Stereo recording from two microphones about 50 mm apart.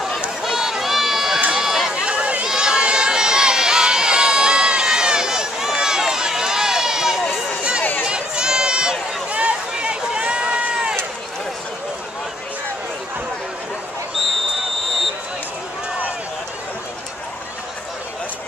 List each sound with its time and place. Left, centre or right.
0.4 s run: centre
2.0 s a sound: right
2.4 s crowd: centre
8.0 s run: centre